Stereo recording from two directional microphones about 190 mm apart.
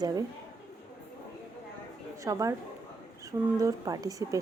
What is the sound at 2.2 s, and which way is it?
Speech, 15° right (ahead or behind).